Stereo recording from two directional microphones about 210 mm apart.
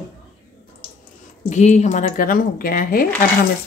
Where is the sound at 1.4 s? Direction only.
35° left (ahead or behind).